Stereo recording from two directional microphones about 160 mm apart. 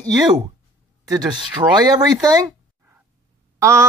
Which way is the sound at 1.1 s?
30° right (ahead or behind).